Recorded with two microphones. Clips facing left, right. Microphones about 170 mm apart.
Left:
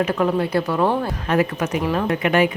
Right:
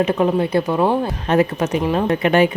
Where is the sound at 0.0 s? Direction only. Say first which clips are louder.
Right 3 dB; 20° right (ahead or behind).